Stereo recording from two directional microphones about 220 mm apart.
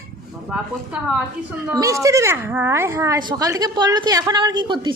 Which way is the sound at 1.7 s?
15° right (ahead or behind).